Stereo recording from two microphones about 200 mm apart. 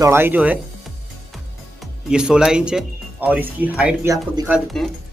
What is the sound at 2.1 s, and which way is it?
Speech, 5° right (ahead or behind).